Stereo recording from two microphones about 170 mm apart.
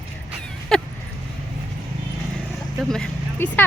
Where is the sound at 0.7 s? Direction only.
5° left (ahead or behind).